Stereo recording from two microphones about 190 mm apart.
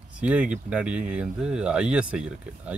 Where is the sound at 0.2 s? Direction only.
5° right (ahead or behind).